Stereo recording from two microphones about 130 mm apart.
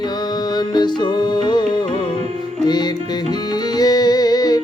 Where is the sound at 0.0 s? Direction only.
35° left (ahead or behind).